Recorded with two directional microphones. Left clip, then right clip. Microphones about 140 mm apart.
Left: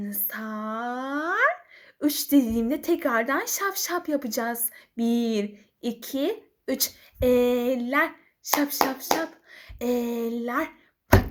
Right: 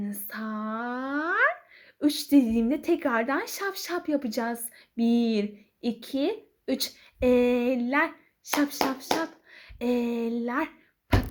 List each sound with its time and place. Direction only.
0.0 s speech: 20° right (ahead or behind)